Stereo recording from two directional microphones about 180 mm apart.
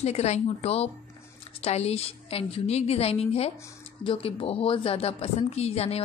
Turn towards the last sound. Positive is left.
turn(degrees=35)  # may be behind; listen again after turning